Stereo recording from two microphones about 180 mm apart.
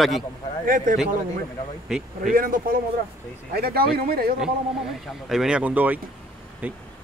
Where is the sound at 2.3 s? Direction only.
50° right (ahead or behind).